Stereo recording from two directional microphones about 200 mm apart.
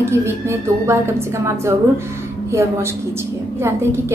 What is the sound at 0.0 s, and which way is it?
Speech, 10° right (ahead or behind).